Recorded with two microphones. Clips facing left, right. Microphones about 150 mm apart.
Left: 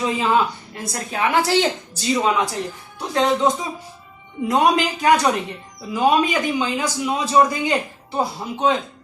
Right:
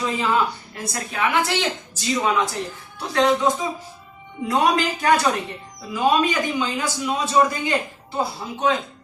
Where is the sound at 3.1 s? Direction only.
20° left (ahead or behind).